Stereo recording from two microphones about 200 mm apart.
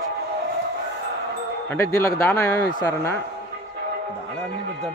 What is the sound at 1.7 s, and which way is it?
Speech, 15° left (ahead or behind).